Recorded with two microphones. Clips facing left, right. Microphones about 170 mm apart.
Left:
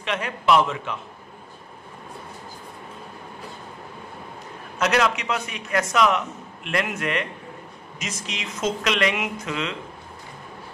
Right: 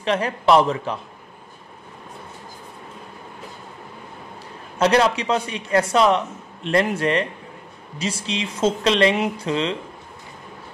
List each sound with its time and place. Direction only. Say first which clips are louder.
0.0 s a man's voice: right 5 dB; 35° right (ahead or behind)
4.7 s a man's voice: right 4 dB; 30° right (ahead or behind)